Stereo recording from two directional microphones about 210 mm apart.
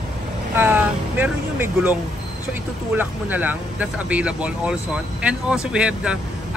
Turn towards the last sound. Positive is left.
turn(degrees=-5)  # may be behind; listen again after turning